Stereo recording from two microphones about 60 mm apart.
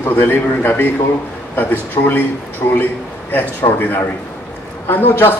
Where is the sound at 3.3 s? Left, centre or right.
Left.